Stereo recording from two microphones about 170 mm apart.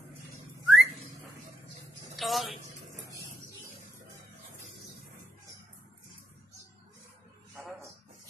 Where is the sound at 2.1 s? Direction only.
Centre (ahead or behind).